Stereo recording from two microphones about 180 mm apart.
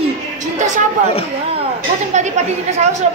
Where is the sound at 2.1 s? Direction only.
40° right (ahead or behind).